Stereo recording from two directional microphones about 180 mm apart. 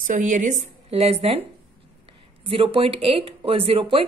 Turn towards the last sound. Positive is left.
turn(degrees=-30)  # may be behind; listen again after turning